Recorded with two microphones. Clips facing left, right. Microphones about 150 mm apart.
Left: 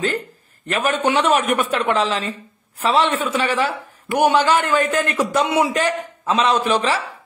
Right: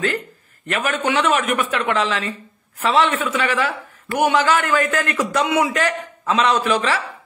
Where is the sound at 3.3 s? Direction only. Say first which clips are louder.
Left 1 dB; 30° left (ahead or behind).